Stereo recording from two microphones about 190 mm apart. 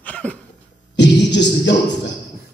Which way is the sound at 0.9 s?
65° left (ahead or behind).